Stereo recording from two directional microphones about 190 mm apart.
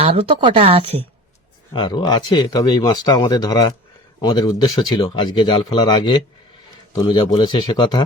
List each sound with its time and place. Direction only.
0.0 s a woman's voice: 30° right (ahead or behind)
1.7 s speech: 20° left (ahead or behind)